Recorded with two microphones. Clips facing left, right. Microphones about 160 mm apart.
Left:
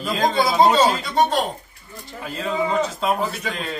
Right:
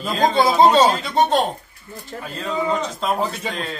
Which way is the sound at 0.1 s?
Centre (ahead or behind).